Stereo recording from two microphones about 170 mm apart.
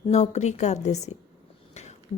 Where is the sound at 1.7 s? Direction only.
40° left (ahead or behind).